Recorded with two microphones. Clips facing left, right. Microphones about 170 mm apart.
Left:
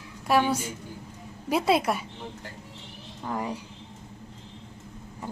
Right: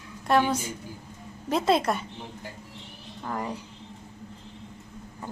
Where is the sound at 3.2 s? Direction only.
10° left (ahead or behind).